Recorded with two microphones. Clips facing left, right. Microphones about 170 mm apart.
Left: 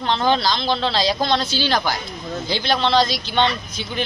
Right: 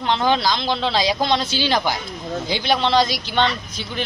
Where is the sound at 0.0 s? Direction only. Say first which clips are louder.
Even; 10° right (ahead or behind).